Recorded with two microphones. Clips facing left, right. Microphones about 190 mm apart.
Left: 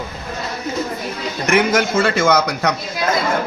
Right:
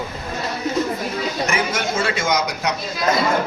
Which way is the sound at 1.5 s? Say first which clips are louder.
Left 12 dB; 70° left (ahead or behind).